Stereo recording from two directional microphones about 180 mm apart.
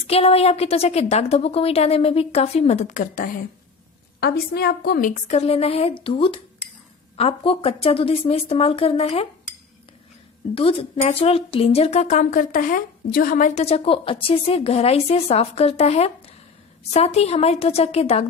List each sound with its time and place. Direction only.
0.0 s speech: 35° left (ahead or behind)
4.2 s speech: 60° left (ahead or behind); by 9.3 s 35° left (ahead or behind)
10.5 s speech: 30° left (ahead or behind)